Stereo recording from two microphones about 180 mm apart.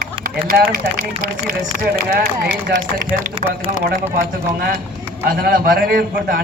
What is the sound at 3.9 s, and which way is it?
Speech, 50° right (ahead or behind).